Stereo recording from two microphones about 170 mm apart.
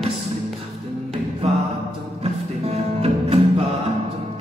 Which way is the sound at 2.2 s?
35° right (ahead or behind).